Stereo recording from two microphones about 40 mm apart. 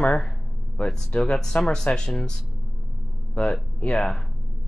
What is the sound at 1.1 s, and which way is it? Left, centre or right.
Speech, left.